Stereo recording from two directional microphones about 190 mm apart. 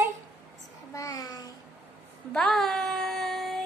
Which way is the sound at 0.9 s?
20° left (ahead or behind).